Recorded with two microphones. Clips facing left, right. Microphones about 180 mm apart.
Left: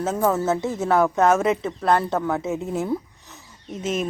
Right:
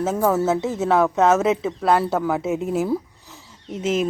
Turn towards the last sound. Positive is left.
turn(degrees=-25)  # may be behind; listen again after turning